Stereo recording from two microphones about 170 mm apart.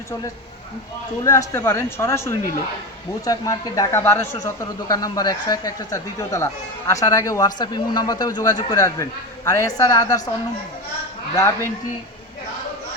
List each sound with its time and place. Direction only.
1.2 s speech: 15° left (ahead or behind)
11.3 s speech: 15° left (ahead or behind)